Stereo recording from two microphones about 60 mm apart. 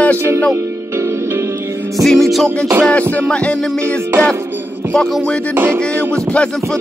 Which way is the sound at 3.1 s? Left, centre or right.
Centre.